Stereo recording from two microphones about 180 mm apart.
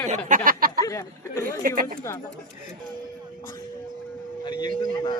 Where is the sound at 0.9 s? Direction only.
15° left (ahead or behind).